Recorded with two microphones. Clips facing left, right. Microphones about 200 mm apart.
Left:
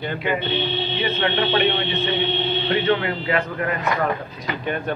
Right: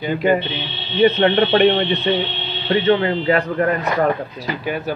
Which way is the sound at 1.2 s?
40° right (ahead or behind).